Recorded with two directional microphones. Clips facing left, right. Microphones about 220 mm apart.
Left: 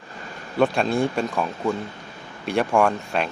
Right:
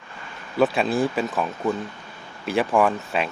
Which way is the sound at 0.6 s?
Centre (ahead or behind).